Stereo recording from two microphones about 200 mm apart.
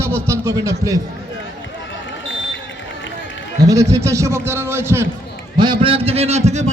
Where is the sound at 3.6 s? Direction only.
15° right (ahead or behind).